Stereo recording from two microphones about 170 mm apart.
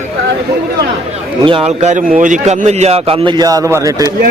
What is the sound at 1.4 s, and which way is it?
A man's voice, 30° right (ahead or behind).